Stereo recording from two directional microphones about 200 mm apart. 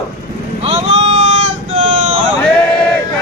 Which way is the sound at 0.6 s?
35° right (ahead or behind).